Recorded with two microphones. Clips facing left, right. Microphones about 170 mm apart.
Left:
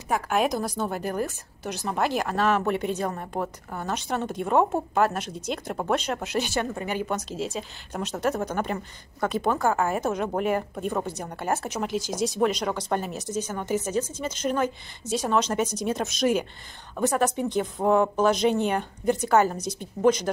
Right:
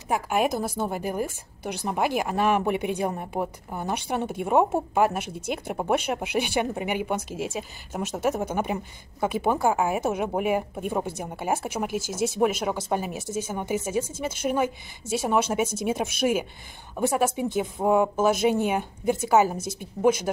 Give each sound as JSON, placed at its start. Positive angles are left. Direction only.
{"t": 0.1, "sound": "a woman's voice", "side_deg": -10}
{"t": 13.2, "sound": "a woman's voice", "side_deg": -50}
{"t": 13.5, "sound": "a woman's voice", "side_deg": -10}